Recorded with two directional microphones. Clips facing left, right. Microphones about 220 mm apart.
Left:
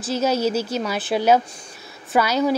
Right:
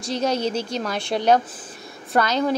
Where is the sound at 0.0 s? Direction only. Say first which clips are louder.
Left 2 dB; 5° left (ahead or behind).